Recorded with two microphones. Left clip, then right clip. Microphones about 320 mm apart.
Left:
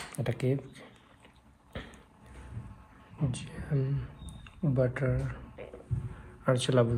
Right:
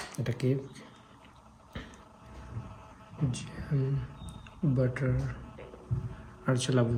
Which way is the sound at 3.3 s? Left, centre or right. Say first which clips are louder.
Left 1 dB; centre.